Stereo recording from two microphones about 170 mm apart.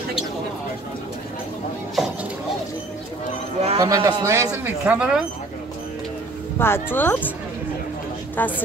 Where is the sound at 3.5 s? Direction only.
35° right (ahead or behind).